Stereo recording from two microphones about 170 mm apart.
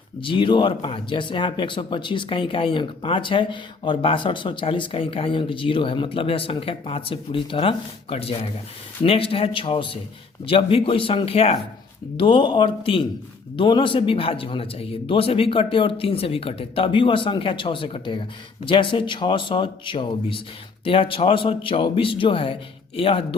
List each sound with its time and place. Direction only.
0.2 s speech: 30° left (ahead or behind)